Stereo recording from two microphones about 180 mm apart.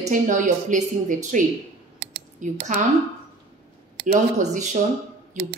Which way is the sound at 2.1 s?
45° right (ahead or behind).